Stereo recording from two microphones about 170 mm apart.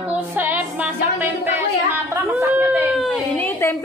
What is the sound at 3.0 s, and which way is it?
Speech, 10° left (ahead or behind).